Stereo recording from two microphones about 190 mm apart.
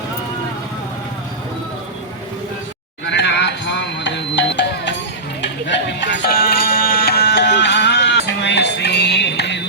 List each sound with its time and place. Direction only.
3.2 s music: 70° left (ahead or behind)